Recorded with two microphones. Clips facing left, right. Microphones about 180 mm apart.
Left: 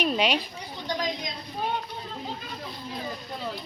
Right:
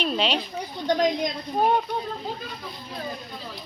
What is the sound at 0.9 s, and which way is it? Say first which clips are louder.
Speech: right 8 dB; 50° right (ahead or behind).